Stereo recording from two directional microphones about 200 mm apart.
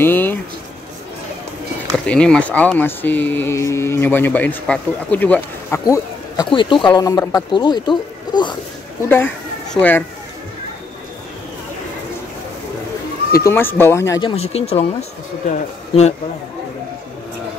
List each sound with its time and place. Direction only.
0.0 s speech: 10° left (ahead or behind)
2.0 s speech: 5° left (ahead or behind); by 8.5 s 20° left (ahead or behind)
9.0 s speech: 10° left (ahead or behind)
13.4 s speech: 10° left (ahead or behind)
14.3 s speech: 30° left (ahead or behind)